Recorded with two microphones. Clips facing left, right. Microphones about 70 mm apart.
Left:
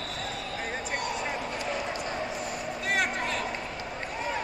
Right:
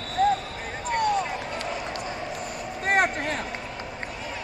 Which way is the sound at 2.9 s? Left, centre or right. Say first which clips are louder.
Right 6 dB; right.